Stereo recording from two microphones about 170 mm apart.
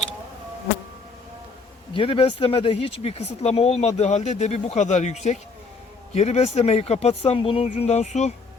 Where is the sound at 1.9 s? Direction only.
30° left (ahead or behind).